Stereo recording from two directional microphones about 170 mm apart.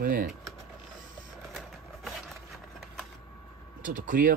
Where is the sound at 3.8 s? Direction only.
50° right (ahead or behind).